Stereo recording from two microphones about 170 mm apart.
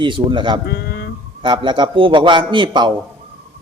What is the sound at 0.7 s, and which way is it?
Speech, 70° left (ahead or behind).